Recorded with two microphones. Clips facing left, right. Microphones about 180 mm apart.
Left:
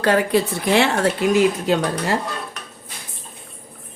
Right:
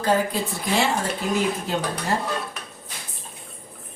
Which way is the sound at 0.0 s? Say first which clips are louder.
Left 5 dB; 75° left (ahead or behind).